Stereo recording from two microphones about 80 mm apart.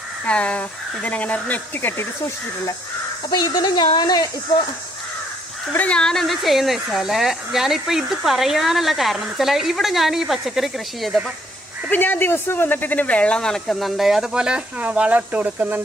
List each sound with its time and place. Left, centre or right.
0.3 s speech: centre
3.3 s speech: left
5.7 s speech: centre
11.9 s speech: left; by 15.8 s centre